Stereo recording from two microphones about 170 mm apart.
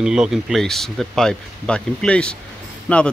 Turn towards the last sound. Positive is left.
turn(degrees=5)  # may be behind; listen again after turning